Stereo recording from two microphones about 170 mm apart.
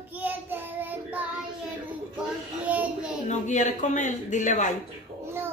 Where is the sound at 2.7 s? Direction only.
5° right (ahead or behind).